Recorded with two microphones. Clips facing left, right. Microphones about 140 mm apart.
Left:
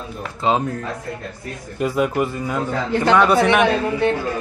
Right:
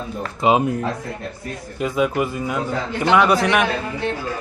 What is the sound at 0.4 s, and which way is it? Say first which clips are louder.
Speech: right 3 dB; 15° right (ahead or behind).